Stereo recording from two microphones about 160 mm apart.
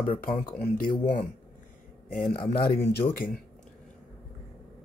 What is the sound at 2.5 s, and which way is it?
Speech, 75° left (ahead or behind).